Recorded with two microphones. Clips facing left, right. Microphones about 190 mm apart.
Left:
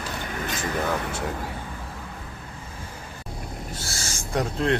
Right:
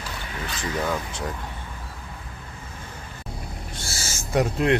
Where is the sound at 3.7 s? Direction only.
Centre (ahead or behind).